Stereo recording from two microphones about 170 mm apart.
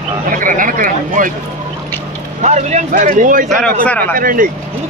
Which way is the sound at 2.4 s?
40° right (ahead or behind).